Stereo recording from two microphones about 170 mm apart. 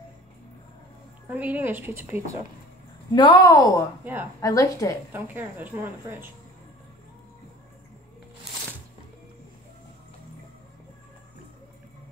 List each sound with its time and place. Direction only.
1.3 s speech: 10° right (ahead or behind)
3.1 s a woman's voice: 25° left (ahead or behind)
4.0 s speech: 10° right (ahead or behind)
4.4 s a woman's voice: 20° left (ahead or behind)
5.1 s speech: 10° right (ahead or behind)